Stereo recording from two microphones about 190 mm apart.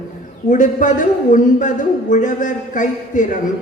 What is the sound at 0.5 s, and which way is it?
A man's voice, 40° left (ahead or behind).